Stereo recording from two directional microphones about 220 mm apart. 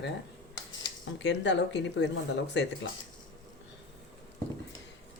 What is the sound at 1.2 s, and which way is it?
Speech, 50° left (ahead or behind).